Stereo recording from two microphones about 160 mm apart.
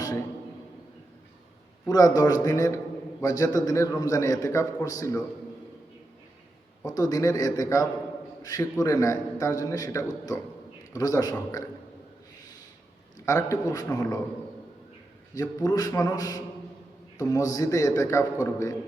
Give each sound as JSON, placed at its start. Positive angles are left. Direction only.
{"t": 1.9, "sound": "a man's voice", "side_deg": 25}
{"t": 6.8, "sound": "a man's voice", "side_deg": 25}
{"t": 13.1, "sound": "a man's voice", "side_deg": 20}
{"t": 15.4, "sound": "a man's voice", "side_deg": 20}